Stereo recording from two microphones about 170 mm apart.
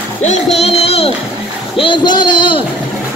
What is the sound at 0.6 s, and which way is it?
Music, 35° left (ahead or behind).